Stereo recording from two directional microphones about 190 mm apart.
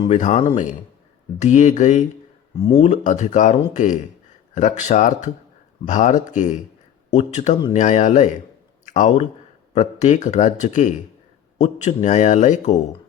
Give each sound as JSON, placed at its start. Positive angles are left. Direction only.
{"t": 0.1, "sound": "speech", "side_deg": 40}